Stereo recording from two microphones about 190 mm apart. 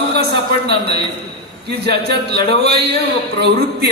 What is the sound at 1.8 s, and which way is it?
Speech, 60° right (ahead or behind).